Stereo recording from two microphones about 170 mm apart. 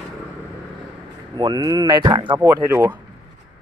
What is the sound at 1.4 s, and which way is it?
Speech, 25° right (ahead or behind).